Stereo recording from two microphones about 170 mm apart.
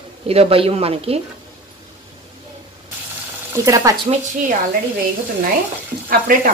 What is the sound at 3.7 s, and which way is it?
Speech, 20° right (ahead or behind).